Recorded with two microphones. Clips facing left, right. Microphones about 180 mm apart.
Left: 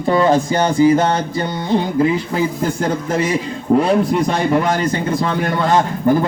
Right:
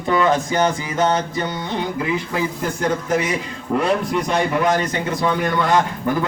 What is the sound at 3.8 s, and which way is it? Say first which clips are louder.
Speech: left 4 dB; 35° left (ahead or behind).